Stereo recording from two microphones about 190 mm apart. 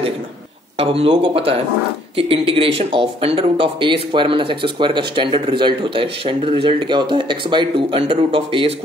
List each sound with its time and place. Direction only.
0.7 s speech: 30° right (ahead or behind)